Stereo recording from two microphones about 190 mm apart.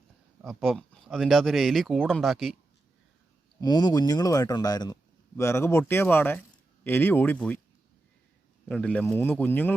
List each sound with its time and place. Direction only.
0.4 s speech: centre (ahead or behind)
3.6 s speech: 20° left (ahead or behind)
8.6 s speech: 5° left (ahead or behind)